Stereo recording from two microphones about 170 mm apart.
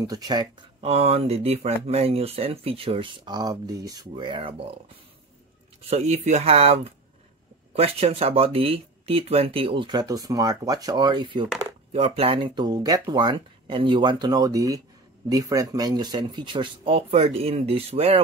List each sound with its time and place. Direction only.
0.0 s speech: 25° right (ahead or behind)
0.7 s speech: 35° right (ahead or behind)
5.9 s speech: 40° right (ahead or behind)